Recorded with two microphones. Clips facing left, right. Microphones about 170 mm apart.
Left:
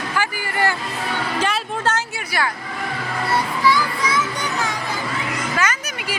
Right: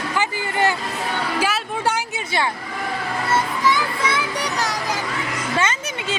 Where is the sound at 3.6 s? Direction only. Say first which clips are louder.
Left 1 dB; 25° right (ahead or behind).